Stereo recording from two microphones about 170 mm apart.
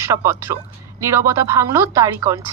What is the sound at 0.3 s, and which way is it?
A woman's voice, 15° right (ahead or behind).